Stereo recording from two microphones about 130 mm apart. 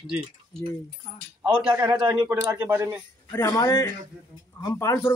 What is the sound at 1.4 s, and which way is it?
Speech, 10° right (ahead or behind).